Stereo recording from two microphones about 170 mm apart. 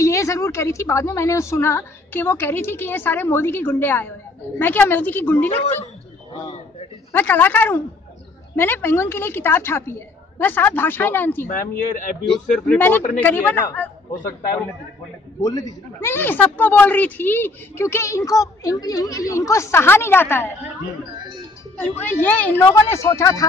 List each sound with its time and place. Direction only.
0.0 s a woman's voice: 20° left (ahead or behind)
7.1 s a woman's voice: 10° left (ahead or behind)
11.4 s speech: 50° left (ahead or behind)
12.3 s a woman's voice: 5° left (ahead or behind)
15.4 s a woman's voice: 20° left (ahead or behind)
21.7 s a woman's voice: 10° left (ahead or behind)